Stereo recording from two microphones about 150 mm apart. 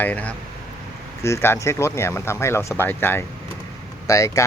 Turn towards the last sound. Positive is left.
turn(degrees=20)  # may be behind; listen again after turning